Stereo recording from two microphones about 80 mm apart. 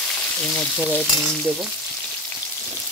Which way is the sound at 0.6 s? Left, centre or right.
Centre.